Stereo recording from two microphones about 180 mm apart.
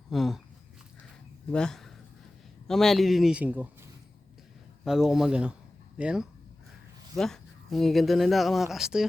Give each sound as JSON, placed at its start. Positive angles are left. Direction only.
{"t": 0.1, "sound": "speech", "side_deg": 0}
{"t": 1.5, "sound": "speech", "side_deg": 5}
{"t": 4.9, "sound": "speech", "side_deg": 0}